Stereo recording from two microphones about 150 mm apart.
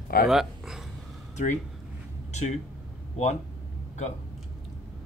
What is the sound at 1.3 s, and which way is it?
Speech, 55° left (ahead or behind).